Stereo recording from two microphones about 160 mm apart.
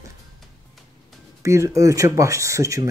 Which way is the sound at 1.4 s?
20° right (ahead or behind).